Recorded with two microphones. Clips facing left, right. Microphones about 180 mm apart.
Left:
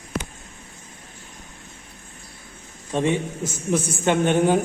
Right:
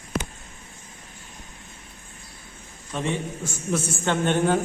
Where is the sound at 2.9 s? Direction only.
20° left (ahead or behind).